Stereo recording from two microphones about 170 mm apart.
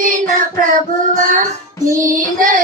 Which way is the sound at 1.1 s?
50° right (ahead or behind).